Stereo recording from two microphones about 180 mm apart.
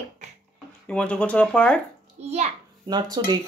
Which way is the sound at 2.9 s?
25° right (ahead or behind).